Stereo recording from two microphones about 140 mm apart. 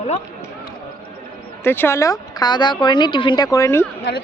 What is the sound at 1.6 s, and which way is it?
A woman's voice, 15° left (ahead or behind).